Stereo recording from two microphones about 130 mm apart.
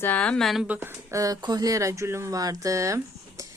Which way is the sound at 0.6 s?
15° right (ahead or behind).